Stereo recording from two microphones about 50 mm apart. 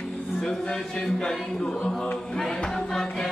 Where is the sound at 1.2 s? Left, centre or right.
Centre.